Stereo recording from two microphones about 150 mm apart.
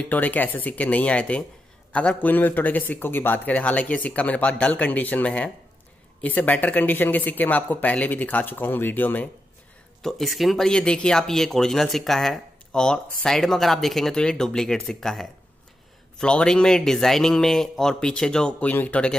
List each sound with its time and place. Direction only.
0.0 s a man's voice: 10° left (ahead or behind)
10.0 s speech: centre (ahead or behind)